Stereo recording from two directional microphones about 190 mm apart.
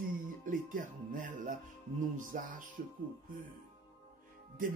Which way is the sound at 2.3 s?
45° right (ahead or behind).